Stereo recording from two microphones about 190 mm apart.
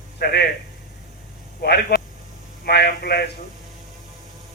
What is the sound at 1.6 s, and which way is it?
Speech, 55° left (ahead or behind).